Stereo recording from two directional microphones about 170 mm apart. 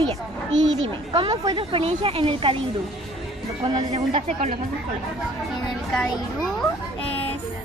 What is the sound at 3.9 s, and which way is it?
Speech, 35° right (ahead or behind).